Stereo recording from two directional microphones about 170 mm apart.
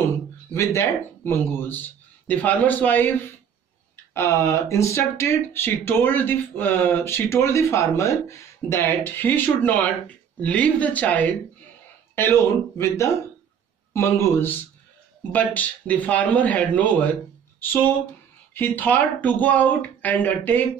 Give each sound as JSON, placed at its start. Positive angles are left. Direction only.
{"t": 0.6, "sound": "speech", "side_deg": 15}